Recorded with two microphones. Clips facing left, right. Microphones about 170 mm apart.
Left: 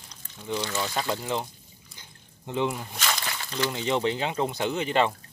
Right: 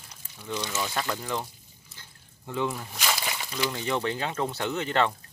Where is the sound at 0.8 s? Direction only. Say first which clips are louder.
Left 2 dB; 20° left (ahead or behind).